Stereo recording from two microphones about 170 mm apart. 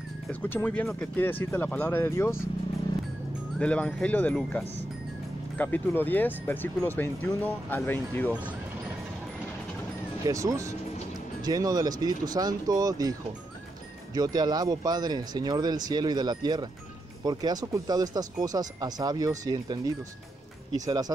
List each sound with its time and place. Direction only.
0.3 s speech: 10° left (ahead or behind)
3.5 s speech: 5° left (ahead or behind)
10.2 s speech: 20° right (ahead or behind)
14.1 s speech: 25° right (ahead or behind)